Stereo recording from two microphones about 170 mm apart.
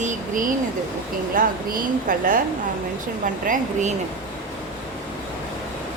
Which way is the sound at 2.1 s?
55° right (ahead or behind).